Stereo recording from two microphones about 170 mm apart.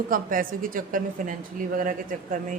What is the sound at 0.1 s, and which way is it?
A woman's voice, 55° right (ahead or behind).